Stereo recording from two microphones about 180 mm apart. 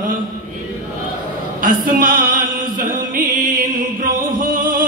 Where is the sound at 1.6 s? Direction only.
50° right (ahead or behind).